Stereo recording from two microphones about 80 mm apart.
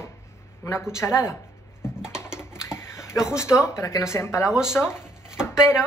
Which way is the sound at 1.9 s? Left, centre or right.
Centre.